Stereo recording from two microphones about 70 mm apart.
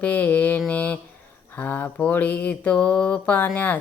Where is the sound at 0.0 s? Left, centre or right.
Left.